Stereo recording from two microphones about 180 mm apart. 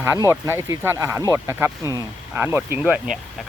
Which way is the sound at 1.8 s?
20° left (ahead or behind).